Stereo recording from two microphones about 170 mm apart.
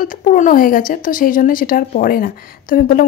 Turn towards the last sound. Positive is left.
turn(degrees=55)  # may be behind; listen again after turning